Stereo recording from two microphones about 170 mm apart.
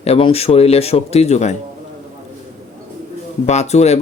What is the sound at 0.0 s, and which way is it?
Speech, 35° left (ahead or behind).